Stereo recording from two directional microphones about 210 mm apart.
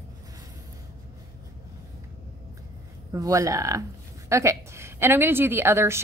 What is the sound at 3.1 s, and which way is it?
A woman's voice, 15° right (ahead or behind).